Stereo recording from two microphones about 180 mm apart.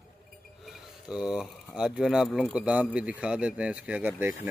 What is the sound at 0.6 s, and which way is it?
Speech, centre (ahead or behind).